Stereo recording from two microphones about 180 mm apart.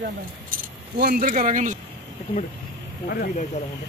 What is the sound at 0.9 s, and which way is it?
Speech, 55° right (ahead or behind).